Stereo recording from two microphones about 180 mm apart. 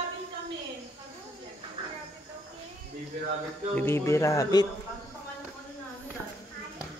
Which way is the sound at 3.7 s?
10° left (ahead or behind).